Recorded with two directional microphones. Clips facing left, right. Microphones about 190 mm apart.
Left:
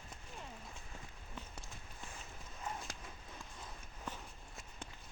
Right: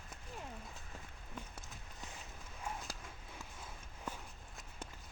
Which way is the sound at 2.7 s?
10° right (ahead or behind).